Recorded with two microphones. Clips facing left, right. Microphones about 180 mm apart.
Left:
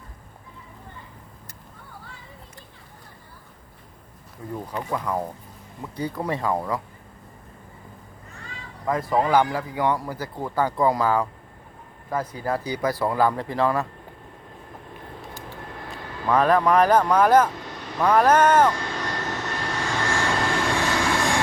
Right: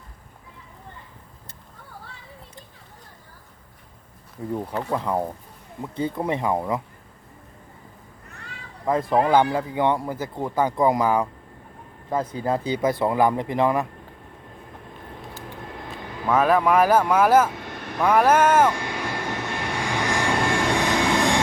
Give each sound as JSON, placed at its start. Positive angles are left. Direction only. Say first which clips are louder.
{"t": 4.9, "sound": "speech", "louder": "right 2 dB", "side_deg": -25}
{"t": 8.9, "sound": "speech", "louder": "right 2 dB", "side_deg": -25}
{"t": 16.2, "sound": "speech", "louder": "even", "side_deg": -5}
{"t": 17.9, "sound": "vehicle", "louder": "even", "side_deg": -10}